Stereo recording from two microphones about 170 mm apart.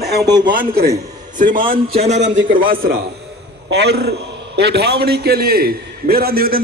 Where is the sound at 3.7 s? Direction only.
80° right; by 6.6 s 60° right (ahead or behind).